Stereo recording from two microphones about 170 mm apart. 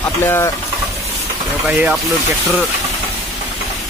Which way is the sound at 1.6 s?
Centre (ahead or behind).